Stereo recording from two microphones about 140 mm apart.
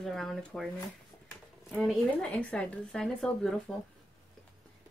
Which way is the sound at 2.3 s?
10° left (ahead or behind).